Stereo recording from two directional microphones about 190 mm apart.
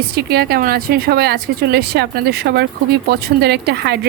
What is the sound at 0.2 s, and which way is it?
A woman's voice, 55° right (ahead or behind).